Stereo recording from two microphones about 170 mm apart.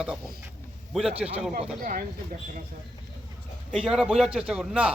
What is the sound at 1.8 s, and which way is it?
Speech, 55° right (ahead or behind).